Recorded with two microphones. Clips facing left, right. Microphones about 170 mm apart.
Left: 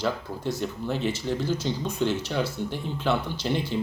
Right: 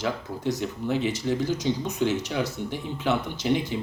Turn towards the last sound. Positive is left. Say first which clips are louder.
# right 2 dB
turn(degrees=-15)  # may be behind; listen again after turning